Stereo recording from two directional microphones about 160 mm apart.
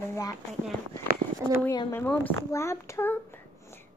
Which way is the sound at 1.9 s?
10° left (ahead or behind).